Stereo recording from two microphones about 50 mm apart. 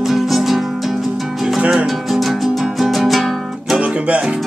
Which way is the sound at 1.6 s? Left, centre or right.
Right.